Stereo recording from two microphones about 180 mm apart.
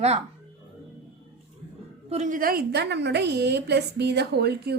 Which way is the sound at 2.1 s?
45° right (ahead or behind).